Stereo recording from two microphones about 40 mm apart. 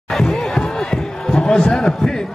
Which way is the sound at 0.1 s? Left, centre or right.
Centre.